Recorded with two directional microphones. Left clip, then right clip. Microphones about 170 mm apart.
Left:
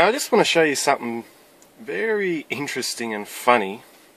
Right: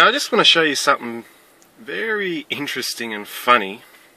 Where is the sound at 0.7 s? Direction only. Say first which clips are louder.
Right 3 dB; centre (ahead or behind).